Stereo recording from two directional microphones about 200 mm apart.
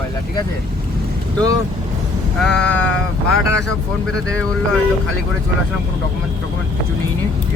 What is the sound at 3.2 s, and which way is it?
Speech, 90° left.